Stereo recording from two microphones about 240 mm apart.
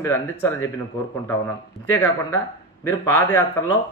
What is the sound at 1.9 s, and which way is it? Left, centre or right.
A man's voice, centre.